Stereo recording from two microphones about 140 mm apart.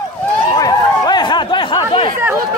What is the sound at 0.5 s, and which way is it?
Chatter, 30° left (ahead or behind).